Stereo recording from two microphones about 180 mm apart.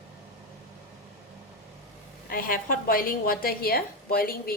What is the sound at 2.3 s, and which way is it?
A woman's voice, 50° left (ahead or behind).